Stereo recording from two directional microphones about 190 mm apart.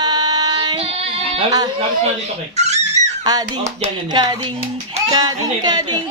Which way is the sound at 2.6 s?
35° right (ahead or behind).